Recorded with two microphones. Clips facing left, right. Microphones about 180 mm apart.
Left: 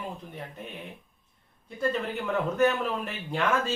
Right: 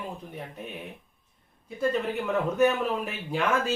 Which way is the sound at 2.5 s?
5° right (ahead or behind).